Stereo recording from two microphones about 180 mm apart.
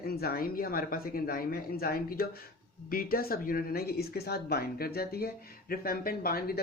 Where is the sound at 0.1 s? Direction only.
60° left (ahead or behind).